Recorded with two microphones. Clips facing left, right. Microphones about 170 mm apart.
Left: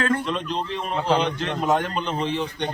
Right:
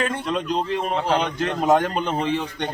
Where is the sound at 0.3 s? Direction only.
45° right (ahead or behind).